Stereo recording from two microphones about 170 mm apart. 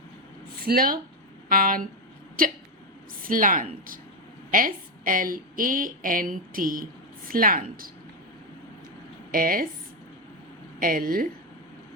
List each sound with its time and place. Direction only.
0.6 s a woman's voice: 60° right (ahead or behind)
9.3 s a woman's voice: 55° right (ahead or behind)
10.8 s a woman's voice: 55° right (ahead or behind)